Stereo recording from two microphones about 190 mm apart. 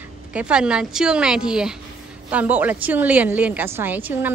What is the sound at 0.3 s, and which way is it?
A woman's voice, 5° right (ahead or behind).